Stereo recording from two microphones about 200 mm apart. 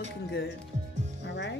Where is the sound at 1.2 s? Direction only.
60° left (ahead or behind).